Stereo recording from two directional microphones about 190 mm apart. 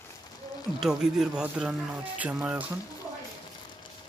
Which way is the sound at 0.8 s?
Centre (ahead or behind).